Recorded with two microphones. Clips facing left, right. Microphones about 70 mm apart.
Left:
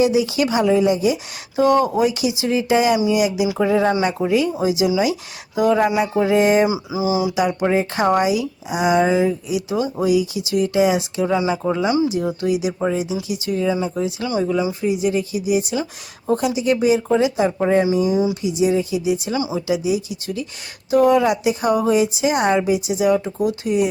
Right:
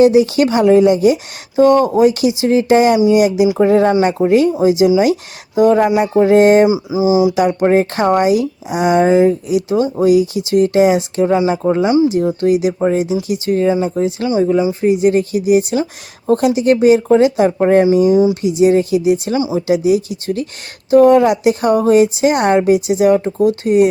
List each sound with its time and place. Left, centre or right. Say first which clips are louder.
0.0 s speech: right 7 dB; right
1.5 s speech: right 6 dB; right
3.9 s speech: right 7 dB; right
4.3 s speech: right 8 dB; right
6.0 s speech: right 7 dB; right
6.9 s speech: right 7 dB; right
7.3 s speech: right 6 dB; right
12.4 s speech: right 7 dB; right
17.9 s speech: right 7 dB; right
20.9 s speech: right 6 dB; right